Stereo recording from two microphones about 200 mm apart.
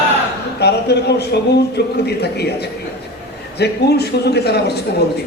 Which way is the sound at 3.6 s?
55° left (ahead or behind).